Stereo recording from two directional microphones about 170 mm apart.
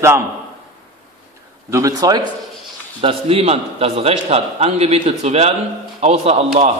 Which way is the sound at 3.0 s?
35° right (ahead or behind).